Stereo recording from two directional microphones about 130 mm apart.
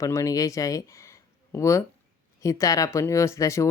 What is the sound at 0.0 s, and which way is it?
A woman's voice, 25° left (ahead or behind).